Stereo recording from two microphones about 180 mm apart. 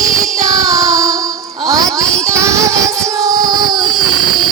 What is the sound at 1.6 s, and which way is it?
Music, 20° right (ahead or behind).